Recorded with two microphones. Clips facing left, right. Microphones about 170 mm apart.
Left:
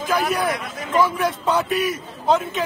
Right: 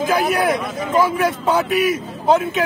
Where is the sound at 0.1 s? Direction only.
5° right (ahead or behind).